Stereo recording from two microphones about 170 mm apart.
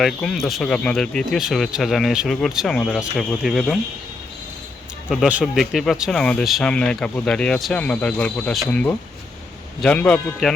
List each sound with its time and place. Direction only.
0.0 s speech: 5° left (ahead or behind)
5.0 s a man's voice: centre (ahead or behind)